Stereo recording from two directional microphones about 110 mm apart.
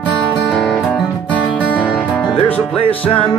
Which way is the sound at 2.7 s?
60° left (ahead or behind).